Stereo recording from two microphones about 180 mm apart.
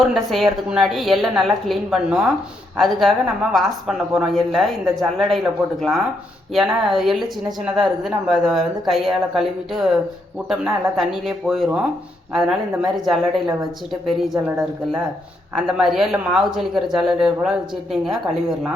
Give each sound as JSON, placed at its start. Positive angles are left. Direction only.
{"t": 0.1, "sound": "a woman's voice", "side_deg": 0}
{"t": 15.6, "sound": "a woman's voice", "side_deg": 0}